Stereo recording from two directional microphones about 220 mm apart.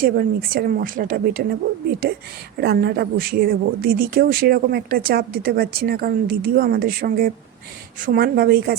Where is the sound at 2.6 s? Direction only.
45° right (ahead or behind).